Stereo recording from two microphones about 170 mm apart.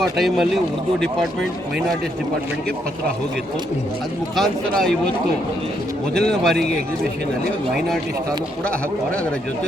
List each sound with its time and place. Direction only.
0.0 s speech: centre (ahead or behind)
6.1 s speech: 5° left (ahead or behind)